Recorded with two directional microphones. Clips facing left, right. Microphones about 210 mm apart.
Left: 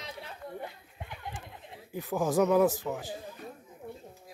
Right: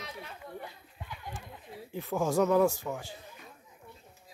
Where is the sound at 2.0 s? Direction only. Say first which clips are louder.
Left 1 dB; centre (ahead or behind).